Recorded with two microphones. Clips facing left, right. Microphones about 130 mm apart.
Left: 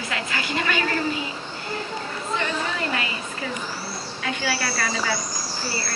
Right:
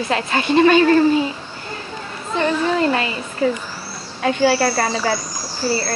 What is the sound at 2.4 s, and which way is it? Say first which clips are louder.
Speech: right 12 dB; 35° right (ahead or behind).